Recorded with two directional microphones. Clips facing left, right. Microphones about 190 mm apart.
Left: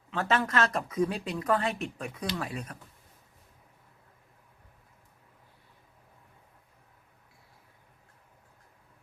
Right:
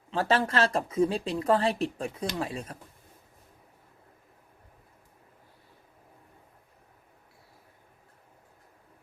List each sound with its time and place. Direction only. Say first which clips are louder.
0.1 s speech: right 2 dB; 30° right (ahead or behind)